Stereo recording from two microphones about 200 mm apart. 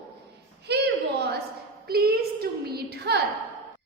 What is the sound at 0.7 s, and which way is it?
A woman's voice, 55° right (ahead or behind).